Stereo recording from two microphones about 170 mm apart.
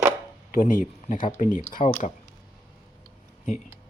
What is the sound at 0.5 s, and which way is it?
Speech, 50° left (ahead or behind).